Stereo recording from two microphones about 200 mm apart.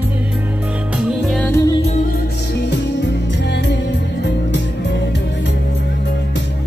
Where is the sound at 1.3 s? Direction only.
5° left (ahead or behind).